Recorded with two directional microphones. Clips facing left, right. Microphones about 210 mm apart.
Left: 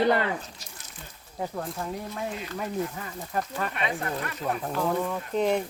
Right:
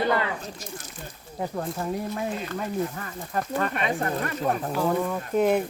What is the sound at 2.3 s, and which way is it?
Speech, 50° right (ahead or behind).